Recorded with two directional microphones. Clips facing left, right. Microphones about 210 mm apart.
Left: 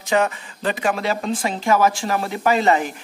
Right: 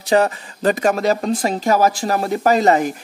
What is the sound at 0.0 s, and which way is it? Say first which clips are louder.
Speech: right 4 dB; 35° right (ahead or behind).